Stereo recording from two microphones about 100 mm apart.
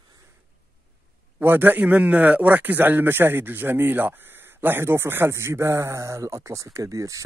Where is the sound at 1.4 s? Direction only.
20° right (ahead or behind).